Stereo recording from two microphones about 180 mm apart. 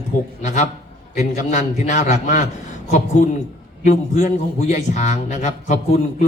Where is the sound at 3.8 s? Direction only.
40° left (ahead or behind).